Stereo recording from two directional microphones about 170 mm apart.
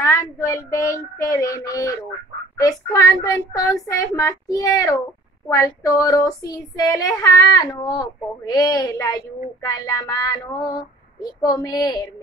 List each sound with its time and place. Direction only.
0.0 s child singing: 15° left (ahead or behind)
2.6 s speech: 20° left (ahead or behind)